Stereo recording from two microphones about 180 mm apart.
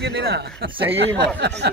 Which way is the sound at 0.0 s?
60° right (ahead or behind).